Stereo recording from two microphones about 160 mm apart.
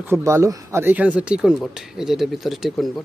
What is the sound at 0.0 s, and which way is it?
Speech, 15° right (ahead or behind).